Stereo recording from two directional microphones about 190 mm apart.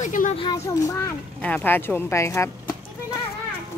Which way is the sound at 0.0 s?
40° left (ahead or behind).